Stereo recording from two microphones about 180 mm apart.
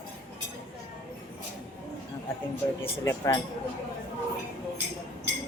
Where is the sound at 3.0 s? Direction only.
15° left (ahead or behind).